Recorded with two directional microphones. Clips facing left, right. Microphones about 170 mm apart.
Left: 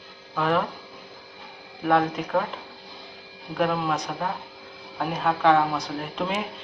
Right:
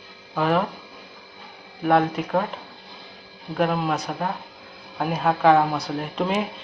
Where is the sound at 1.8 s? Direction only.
30° right (ahead or behind).